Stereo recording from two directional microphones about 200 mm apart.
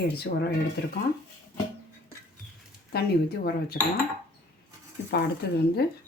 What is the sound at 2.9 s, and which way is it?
Speech, 55° left (ahead or behind).